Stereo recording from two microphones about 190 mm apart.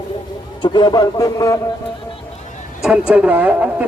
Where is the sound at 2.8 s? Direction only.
5° right (ahead or behind).